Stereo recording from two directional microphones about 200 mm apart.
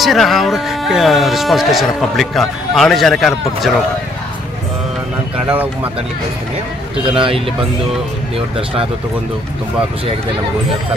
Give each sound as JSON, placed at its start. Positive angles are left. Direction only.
{"t": 0.0, "sound": "speech", "side_deg": 0}
{"t": 7.1, "sound": "speech", "side_deg": -25}